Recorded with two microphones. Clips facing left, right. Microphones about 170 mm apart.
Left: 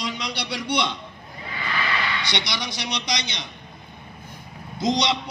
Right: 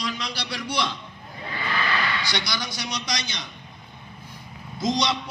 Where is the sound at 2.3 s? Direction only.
20° left (ahead or behind).